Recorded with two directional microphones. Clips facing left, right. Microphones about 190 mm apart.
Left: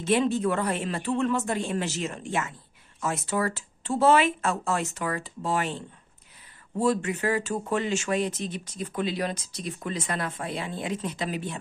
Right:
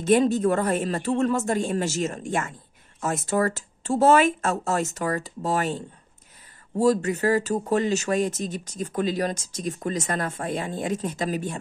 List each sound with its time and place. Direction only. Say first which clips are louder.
0.0 s speech: right 4 dB; 45° right (ahead or behind)